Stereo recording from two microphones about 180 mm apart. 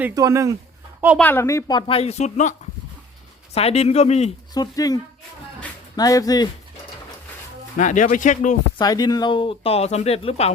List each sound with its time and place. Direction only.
0.1 s speech: 20° right (ahead or behind)
1.2 s speech: 10° left (ahead or behind); by 4.3 s 35° left (ahead or behind)
4.5 s speech: 20° left (ahead or behind)
6.0 s speech: 20° left (ahead or behind)
7.8 s speech: 45° left (ahead or behind)
8.8 s speech: 20° left (ahead or behind)